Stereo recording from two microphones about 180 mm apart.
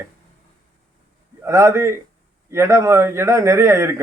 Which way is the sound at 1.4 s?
15° right (ahead or behind).